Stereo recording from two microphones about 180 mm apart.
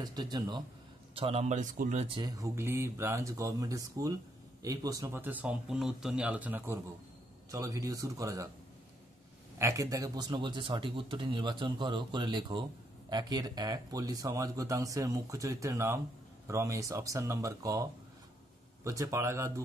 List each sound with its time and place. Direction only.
0.0 s speech: 25° right (ahead or behind); by 2.0 s 45° right (ahead or behind)
2.0 s speech: 25° right (ahead or behind)
9.6 s speech: 15° right (ahead or behind)
18.9 s speech: 15° right (ahead or behind)